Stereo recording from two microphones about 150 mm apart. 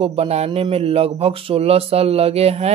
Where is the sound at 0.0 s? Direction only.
40° right (ahead or behind).